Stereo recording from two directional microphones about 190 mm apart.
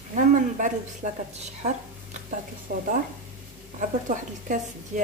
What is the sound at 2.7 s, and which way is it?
A woman's voice, 50° right (ahead or behind).